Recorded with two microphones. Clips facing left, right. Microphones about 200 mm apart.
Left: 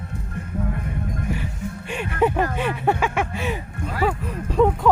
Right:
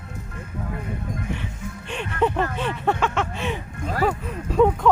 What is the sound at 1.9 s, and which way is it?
Speech, 10° left (ahead or behind).